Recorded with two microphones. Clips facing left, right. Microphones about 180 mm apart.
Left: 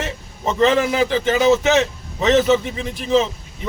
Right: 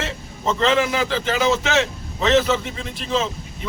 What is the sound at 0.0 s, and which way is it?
A man's voice, 20° left (ahead or behind).